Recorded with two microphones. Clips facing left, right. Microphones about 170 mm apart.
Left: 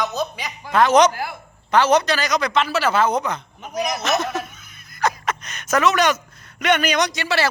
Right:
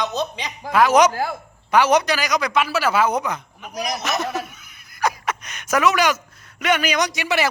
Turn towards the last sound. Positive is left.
turn(degrees=-15)  # may be behind; listen again after turning